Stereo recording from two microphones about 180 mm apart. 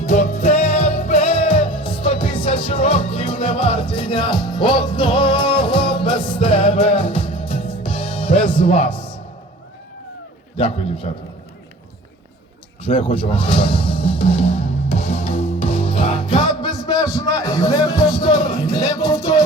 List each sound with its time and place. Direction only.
0.0 s music: 40° left (ahead or behind)
10.6 s a man's voice: 30° left (ahead or behind)
12.8 s speech: 30° left (ahead or behind)
13.2 s music: 30° left (ahead or behind)